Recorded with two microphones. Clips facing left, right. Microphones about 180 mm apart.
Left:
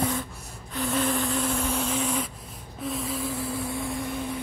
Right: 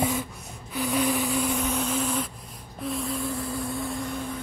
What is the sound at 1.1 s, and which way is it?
Vehicle, centre (ahead or behind).